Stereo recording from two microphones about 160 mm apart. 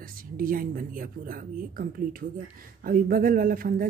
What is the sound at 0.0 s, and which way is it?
Speech, 60° right (ahead or behind).